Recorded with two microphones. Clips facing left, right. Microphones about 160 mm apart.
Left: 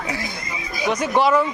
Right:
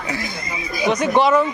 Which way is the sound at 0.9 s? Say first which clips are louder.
Right 2 dB; 5° left (ahead or behind).